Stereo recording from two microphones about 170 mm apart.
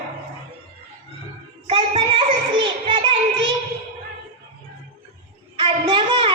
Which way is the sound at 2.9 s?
30° right (ahead or behind).